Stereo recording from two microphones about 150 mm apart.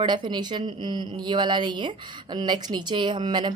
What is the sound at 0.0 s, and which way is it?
Speech, 30° right (ahead or behind).